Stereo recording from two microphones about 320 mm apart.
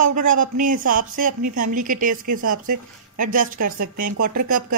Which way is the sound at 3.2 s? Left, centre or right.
Right.